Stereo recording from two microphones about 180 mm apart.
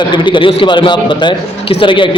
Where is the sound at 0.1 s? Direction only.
25° left (ahead or behind).